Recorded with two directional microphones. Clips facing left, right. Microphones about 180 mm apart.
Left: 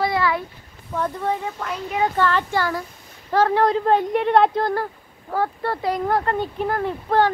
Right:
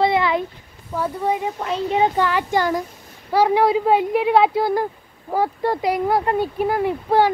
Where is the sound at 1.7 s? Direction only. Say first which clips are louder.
Right 5 dB; 25° right (ahead or behind).